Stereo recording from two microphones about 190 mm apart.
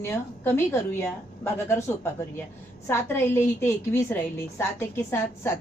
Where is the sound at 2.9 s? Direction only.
10° left (ahead or behind).